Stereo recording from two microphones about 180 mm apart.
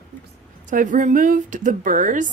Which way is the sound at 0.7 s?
45° right (ahead or behind).